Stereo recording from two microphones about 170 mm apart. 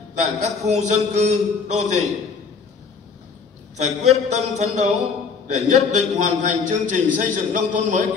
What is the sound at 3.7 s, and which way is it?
A man's voice, 40° right (ahead or behind).